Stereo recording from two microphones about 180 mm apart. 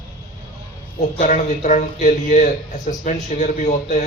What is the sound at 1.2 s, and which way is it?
A man's voice, 45° left (ahead or behind).